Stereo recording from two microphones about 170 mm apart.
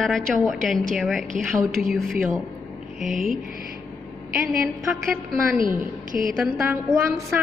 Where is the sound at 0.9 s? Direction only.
Centre (ahead or behind).